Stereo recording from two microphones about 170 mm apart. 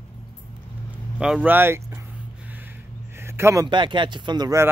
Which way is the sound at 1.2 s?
5° right (ahead or behind).